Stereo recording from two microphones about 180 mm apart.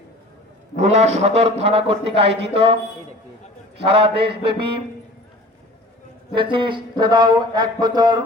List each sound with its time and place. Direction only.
0.8 s mantra: 40° right (ahead or behind)
3.8 s mantra: 30° right (ahead or behind)
6.3 s speech: 25° right (ahead or behind)